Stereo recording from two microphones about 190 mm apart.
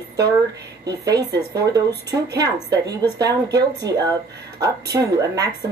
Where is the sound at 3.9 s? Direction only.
20° right (ahead or behind).